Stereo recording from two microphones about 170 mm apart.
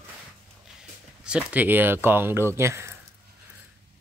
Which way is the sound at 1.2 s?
10° right (ahead or behind).